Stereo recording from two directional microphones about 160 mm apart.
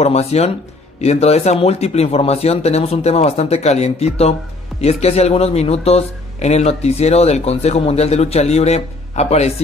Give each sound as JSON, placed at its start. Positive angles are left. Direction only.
{"t": 0.0, "sound": "speech", "side_deg": 40}